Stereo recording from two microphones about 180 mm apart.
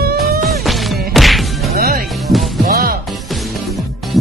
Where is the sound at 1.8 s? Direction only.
55° right (ahead or behind).